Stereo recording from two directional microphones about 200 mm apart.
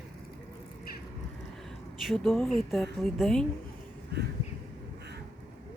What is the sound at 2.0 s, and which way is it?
A woman's voice, centre (ahead or behind).